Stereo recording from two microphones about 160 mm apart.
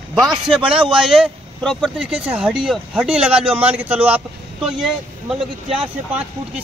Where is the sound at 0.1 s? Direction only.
Centre (ahead or behind).